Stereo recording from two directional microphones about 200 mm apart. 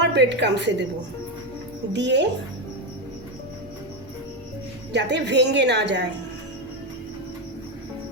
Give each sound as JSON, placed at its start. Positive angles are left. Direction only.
{"t": 0.0, "sound": "a woman's voice", "side_deg": -60}
{"t": 1.9, "sound": "a woman's voice", "side_deg": -60}
{"t": 4.9, "sound": "a woman's voice", "side_deg": -60}